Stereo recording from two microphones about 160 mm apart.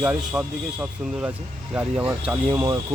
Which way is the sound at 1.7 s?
10° right (ahead or behind).